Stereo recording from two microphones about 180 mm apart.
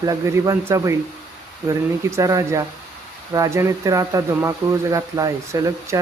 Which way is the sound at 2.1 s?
15° right (ahead or behind).